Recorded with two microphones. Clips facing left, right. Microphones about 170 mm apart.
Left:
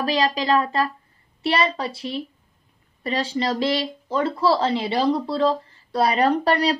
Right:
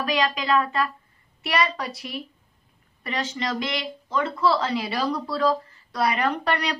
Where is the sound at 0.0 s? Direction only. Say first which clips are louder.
Left 3 dB; 35° left (ahead or behind).